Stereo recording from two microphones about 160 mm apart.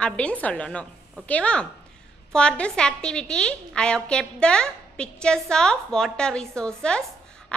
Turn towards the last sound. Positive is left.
turn(degrees=5)  # may be behind; listen again after turning